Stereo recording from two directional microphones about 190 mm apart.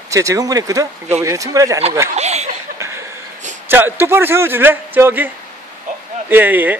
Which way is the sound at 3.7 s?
10° right (ahead or behind).